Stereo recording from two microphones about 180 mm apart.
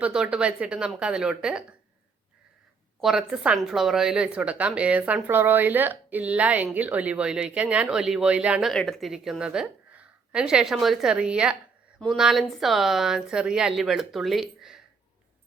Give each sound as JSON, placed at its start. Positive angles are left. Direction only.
{"t": 0.0, "sound": "speech", "side_deg": -5}
{"t": 3.0, "sound": "speech", "side_deg": 0}